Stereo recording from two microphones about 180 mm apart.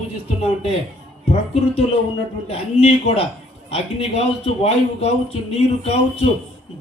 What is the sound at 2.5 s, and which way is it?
A man's voice, 35° left (ahead or behind).